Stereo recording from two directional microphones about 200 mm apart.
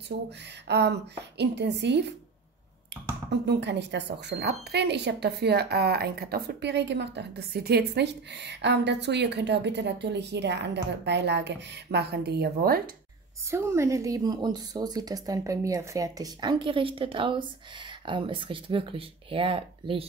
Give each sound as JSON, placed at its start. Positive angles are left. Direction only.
{"t": 0.7, "sound": "speech", "side_deg": -55}
{"t": 3.3, "sound": "speech", "side_deg": -60}
{"t": 13.5, "sound": "speech", "side_deg": -15}